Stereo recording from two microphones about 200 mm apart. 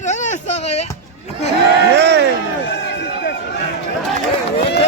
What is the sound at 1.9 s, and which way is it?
Speech, 55° right (ahead or behind).